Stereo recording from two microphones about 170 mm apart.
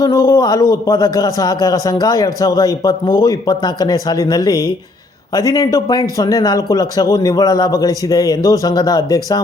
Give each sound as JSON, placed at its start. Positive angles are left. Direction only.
{"t": 0.0, "sound": "speech", "side_deg": 20}